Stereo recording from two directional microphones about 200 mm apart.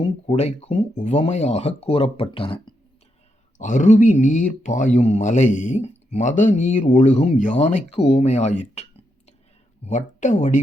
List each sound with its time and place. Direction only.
0.0 s speech: 30° left (ahead or behind)
3.6 s speech: 40° left (ahead or behind)